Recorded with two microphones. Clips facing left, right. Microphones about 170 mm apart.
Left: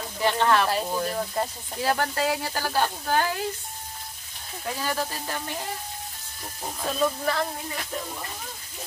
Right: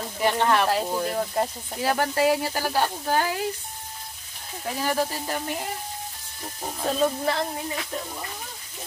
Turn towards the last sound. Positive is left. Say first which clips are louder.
# right 2 dB
turn(degrees=-25)  # may be behind; listen again after turning